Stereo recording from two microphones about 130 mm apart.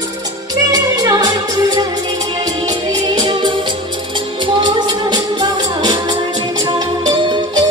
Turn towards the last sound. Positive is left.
turn(degrees=-35)  # may be behind; listen again after turning